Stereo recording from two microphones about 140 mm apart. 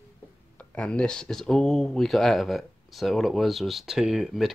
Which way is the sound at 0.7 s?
5° left (ahead or behind).